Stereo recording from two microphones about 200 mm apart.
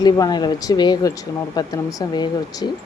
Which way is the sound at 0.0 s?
20° left (ahead or behind).